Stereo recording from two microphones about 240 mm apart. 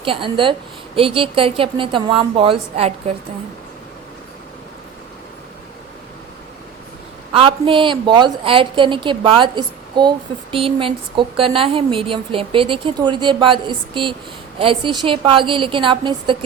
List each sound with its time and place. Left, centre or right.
0.0 s a woman's voice: right
7.3 s a woman's voice: right